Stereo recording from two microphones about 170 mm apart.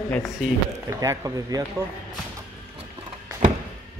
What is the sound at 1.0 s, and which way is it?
Speech, 20° right (ahead or behind).